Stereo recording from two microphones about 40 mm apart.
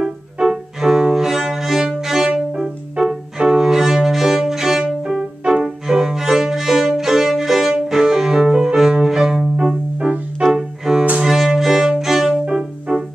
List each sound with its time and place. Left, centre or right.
0.0 s music: centre
6.2 s violin: centre
7.9 s cello: centre
8.9 s bowed string instrument: centre
10.1 s music: right
10.4 s music: centre